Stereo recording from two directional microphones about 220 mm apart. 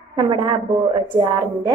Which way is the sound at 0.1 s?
20° right (ahead or behind).